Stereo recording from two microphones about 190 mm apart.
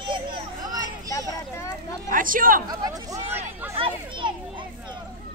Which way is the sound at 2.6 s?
20° right (ahead or behind).